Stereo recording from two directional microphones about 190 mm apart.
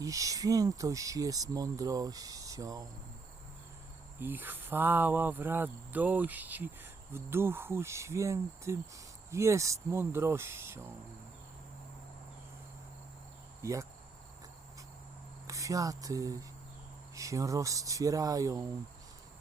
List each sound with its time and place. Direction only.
0.0 s speech: 15° right (ahead or behind)
4.2 s speech: 10° right (ahead or behind)
13.6 s speech: 15° right (ahead or behind)
15.4 s speech: 15° right (ahead or behind)